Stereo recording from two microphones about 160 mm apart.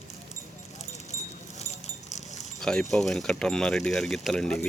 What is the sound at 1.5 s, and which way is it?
Sheep, 45° left (ahead or behind).